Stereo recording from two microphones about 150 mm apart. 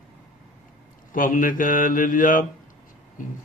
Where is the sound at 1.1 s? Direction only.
65° left (ahead or behind).